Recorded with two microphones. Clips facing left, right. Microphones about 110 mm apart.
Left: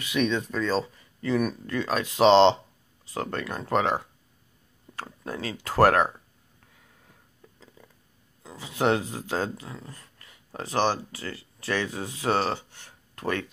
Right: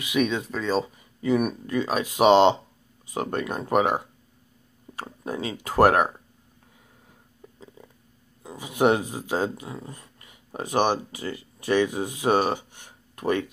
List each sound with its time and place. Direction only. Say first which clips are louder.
0.0 s speech: right 1 dB; 10° right (ahead or behind)
7.4 s a sound: right 6 dB; 20° right (ahead or behind)
8.4 s speech: right 5 dB; 15° right (ahead or behind)